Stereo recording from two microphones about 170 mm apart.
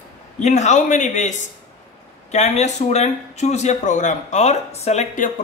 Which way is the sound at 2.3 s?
40° left (ahead or behind).